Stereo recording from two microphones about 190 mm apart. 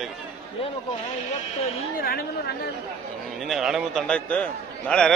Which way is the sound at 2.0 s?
55° left (ahead or behind).